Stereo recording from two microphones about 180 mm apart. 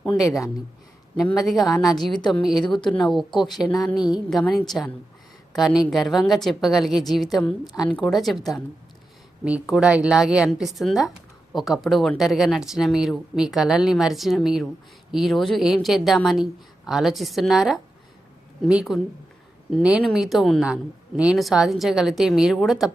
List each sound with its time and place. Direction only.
1.5 s speech: centre (ahead or behind)
3.9 s speech: 25° left (ahead or behind)
4.3 s speech: centre (ahead or behind)